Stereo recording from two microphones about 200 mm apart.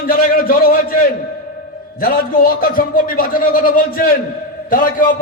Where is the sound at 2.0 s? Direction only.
45° left (ahead or behind).